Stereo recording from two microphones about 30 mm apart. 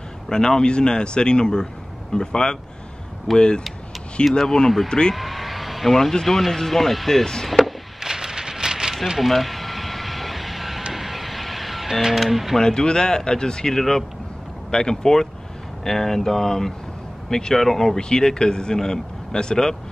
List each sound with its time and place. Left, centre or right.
0.3 s speech: left
5.1 s vehicle: centre
6.2 s speech: centre
7.4 s a sound: centre
8.0 s rain: centre
9.2 s vehicle: centre
10.9 s single-lens reflex camera: centre
12.5 s speech: left
13.7 s speech: centre